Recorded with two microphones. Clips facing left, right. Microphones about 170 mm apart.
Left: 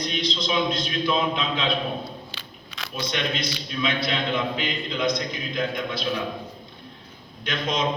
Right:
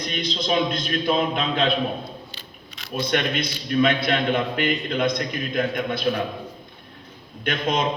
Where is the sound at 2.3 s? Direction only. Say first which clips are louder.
Left 1 dB; 90° left.